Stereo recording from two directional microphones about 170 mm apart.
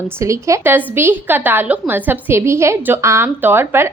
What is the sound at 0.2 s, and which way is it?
A woman's voice, 15° right (ahead or behind).